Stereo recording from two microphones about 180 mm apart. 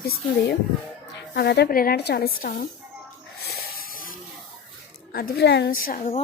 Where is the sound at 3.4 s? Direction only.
55° left (ahead or behind).